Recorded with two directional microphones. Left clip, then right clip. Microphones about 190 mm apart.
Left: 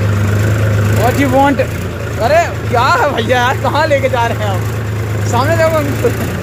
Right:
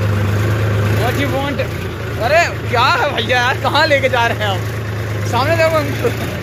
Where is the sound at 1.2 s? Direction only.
25° left (ahead or behind).